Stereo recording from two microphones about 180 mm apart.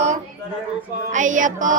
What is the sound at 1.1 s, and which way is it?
Female singing, 45° right (ahead or behind).